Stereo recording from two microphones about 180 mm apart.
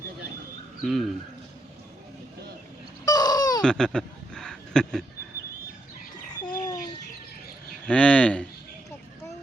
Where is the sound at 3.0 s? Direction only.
20° left (ahead or behind).